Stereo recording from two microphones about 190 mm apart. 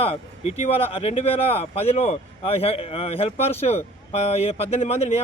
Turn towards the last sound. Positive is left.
turn(degrees=35)  # may be behind; listen again after turning